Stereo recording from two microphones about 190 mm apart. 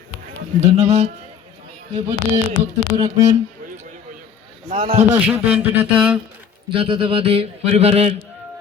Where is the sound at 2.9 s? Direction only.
40° right (ahead or behind).